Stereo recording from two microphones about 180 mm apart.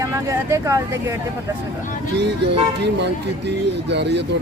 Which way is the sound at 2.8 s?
70° right (ahead or behind).